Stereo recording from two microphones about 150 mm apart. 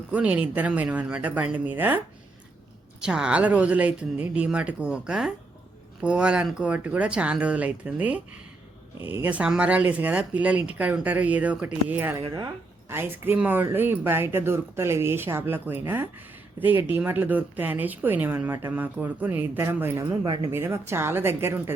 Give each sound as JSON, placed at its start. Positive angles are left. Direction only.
{"t": 0.1, "sound": "speech", "side_deg": -10}
{"t": 3.0, "sound": "speech", "side_deg": -5}
{"t": 20.1, "sound": "speech", "side_deg": -30}
{"t": 20.5, "sound": "speech", "side_deg": -15}